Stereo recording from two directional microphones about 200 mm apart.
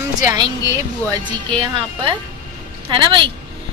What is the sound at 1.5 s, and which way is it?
A woman's voice, 25° right (ahead or behind).